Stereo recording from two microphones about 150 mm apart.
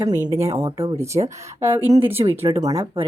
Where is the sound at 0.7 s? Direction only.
40° right (ahead or behind).